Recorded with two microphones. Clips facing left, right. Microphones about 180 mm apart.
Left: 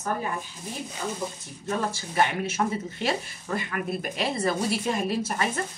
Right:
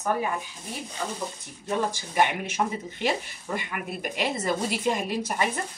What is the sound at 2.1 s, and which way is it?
Speech, 15° right (ahead or behind).